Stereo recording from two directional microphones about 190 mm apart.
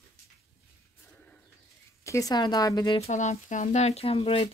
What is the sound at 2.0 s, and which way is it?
Speech, 15° left (ahead or behind).